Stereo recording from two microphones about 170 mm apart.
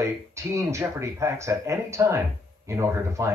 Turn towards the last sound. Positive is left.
turn(degrees=-15)  # may be behind; listen again after turning